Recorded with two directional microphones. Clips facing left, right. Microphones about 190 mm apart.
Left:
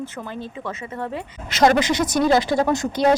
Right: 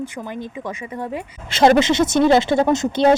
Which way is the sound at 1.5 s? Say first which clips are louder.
Right 3 dB; 25° right (ahead or behind).